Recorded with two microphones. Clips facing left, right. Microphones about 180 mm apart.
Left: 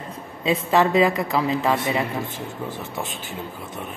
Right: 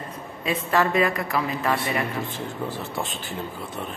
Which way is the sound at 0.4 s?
20° left (ahead or behind).